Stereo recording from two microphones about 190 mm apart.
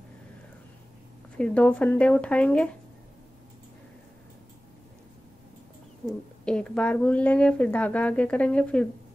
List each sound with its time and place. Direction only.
1.4 s a woman's voice: 5° left (ahead or behind)
6.0 s a woman's voice: 5° left (ahead or behind)